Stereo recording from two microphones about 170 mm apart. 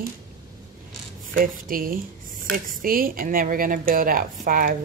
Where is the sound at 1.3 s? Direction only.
55° right (ahead or behind).